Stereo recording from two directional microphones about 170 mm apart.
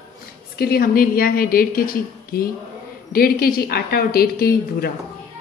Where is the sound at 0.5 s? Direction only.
65° left (ahead or behind).